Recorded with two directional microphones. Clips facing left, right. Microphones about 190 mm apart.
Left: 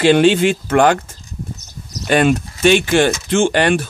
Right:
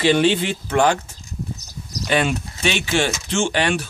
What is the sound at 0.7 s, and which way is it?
Speech, 55° left (ahead or behind).